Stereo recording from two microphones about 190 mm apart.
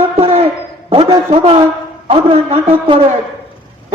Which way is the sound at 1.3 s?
35° right (ahead or behind).